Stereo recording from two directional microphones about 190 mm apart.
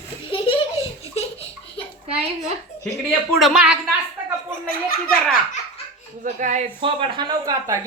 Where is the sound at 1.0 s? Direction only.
30° left (ahead or behind).